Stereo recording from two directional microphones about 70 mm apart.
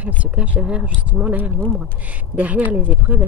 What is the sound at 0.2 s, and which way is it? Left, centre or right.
Speech, centre.